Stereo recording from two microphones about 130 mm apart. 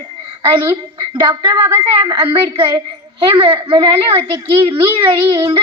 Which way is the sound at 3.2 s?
45° right (ahead or behind).